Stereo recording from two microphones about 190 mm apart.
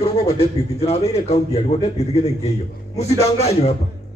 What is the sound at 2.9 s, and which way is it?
Speech, 35° left (ahead or behind).